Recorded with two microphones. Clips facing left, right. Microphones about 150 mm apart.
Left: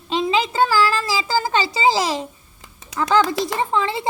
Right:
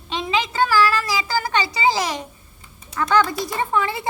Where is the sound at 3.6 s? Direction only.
25° left (ahead or behind).